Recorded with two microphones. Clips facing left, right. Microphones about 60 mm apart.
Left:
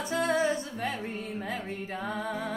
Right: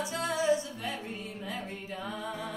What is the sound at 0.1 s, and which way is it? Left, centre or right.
Music, left.